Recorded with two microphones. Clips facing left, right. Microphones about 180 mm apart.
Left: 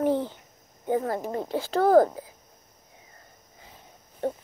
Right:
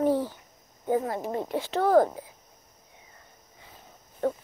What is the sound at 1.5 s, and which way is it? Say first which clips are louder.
Speech: left 3 dB; 35° left (ahead or behind).